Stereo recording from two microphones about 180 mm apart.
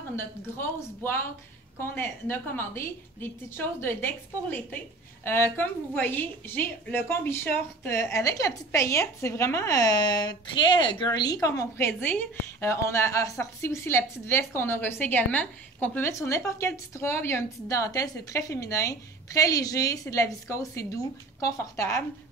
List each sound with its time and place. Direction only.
0.1 s a woman's voice: 10° left (ahead or behind)